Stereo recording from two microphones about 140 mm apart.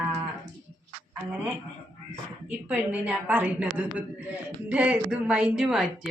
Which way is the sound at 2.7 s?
10° right (ahead or behind).